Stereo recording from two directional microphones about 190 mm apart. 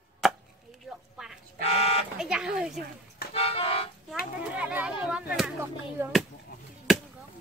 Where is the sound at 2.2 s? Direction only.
5° right (ahead or behind).